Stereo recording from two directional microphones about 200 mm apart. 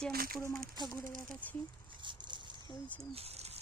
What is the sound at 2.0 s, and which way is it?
Dog, 25° right (ahead or behind).